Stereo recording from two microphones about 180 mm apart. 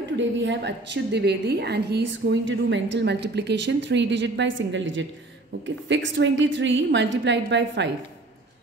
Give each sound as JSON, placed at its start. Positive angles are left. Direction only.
{"t": 0.2, "sound": "a woman's voice", "side_deg": -80}